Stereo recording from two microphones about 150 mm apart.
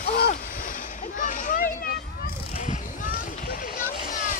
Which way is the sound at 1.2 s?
60° left (ahead or behind).